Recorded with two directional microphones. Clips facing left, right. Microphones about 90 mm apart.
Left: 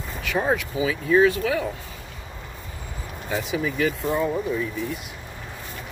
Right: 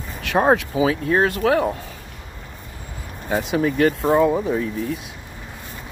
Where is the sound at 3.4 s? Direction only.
60° right (ahead or behind).